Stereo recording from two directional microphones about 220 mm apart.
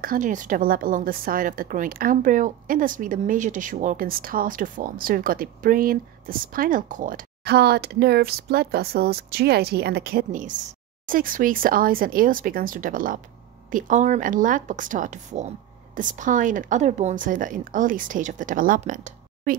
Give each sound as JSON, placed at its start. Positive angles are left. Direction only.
{"t": 0.0, "sound": "a woman's voice", "side_deg": -40}